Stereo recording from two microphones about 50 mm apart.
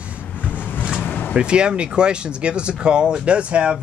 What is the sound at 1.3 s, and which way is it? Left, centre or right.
Speech, centre.